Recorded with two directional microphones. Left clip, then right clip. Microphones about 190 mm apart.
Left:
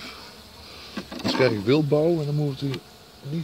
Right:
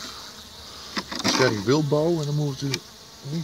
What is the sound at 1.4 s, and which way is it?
Speech, 5° left (ahead or behind).